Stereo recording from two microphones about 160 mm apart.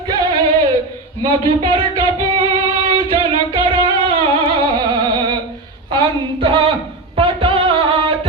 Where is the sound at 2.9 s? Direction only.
30° right (ahead or behind).